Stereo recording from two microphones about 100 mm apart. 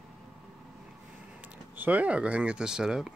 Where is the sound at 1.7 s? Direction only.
15° right (ahead or behind).